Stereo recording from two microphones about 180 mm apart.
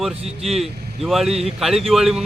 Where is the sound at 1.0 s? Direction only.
Centre (ahead or behind).